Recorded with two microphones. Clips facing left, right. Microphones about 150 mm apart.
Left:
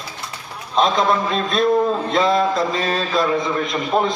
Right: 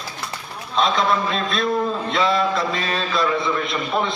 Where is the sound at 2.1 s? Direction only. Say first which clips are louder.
Left 2 dB; 45° left (ahead or behind).